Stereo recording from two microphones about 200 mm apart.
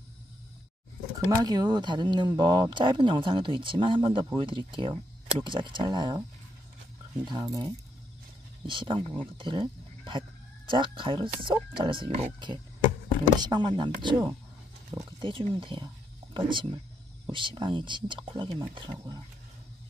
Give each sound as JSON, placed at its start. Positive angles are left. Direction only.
{"t": 1.3, "sound": "speech", "side_deg": -20}
{"t": 7.2, "sound": "speech", "side_deg": -20}